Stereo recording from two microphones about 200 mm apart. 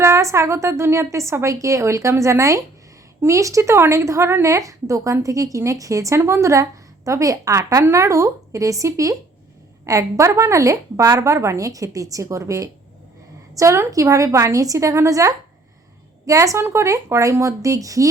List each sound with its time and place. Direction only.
0.0 s a woman's voice: 15° right (ahead or behind)